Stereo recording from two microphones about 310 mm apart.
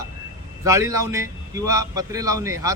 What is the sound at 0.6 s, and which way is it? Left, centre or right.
A man's voice, centre.